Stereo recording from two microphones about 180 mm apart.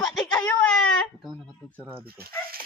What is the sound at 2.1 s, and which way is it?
Speech, 55° right (ahead or behind).